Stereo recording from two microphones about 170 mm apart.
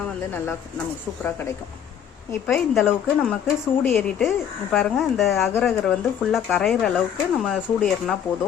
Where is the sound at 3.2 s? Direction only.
Centre (ahead or behind).